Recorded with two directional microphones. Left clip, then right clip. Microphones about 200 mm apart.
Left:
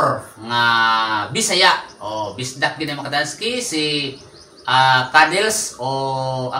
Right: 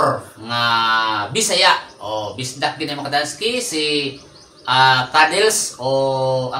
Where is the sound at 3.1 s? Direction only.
15° right (ahead or behind).